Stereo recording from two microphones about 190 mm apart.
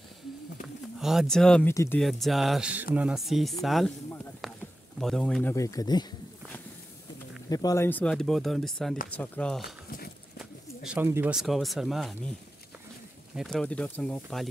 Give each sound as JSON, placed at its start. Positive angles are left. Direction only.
{"t": 0.9, "sound": "speech", "side_deg": 0}
{"t": 1.7, "sound": "speech", "side_deg": 15}
{"t": 2.0, "sound": "speech", "side_deg": 0}
{"t": 5.0, "sound": "speech", "side_deg": 0}
{"t": 7.4, "sound": "speech", "side_deg": 20}
{"t": 9.8, "sound": "horse", "side_deg": 55}
{"t": 10.4, "sound": "speech", "side_deg": -5}
{"t": 13.3, "sound": "speech", "side_deg": 0}